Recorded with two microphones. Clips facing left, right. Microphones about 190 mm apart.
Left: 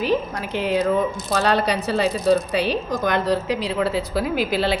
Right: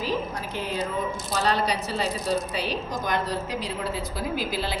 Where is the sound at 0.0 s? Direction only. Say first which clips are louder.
Left 6 dB; 70° left (ahead or behind).